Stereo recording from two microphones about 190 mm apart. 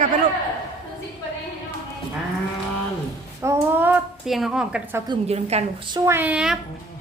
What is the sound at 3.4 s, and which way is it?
A woman's voice, 10° right (ahead or behind).